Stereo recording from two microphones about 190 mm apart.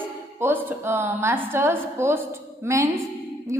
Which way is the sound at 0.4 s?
10° right (ahead or behind).